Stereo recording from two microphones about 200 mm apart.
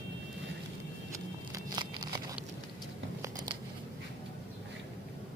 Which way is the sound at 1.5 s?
20° right (ahead or behind).